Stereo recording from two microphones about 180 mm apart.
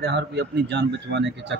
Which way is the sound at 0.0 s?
70° right (ahead or behind).